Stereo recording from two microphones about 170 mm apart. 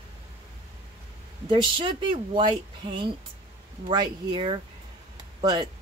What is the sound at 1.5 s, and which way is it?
Speech, 30° right (ahead or behind).